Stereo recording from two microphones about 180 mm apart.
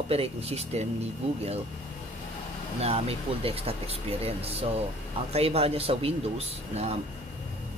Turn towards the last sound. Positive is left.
turn(degrees=-35)  # may be behind; listen again after turning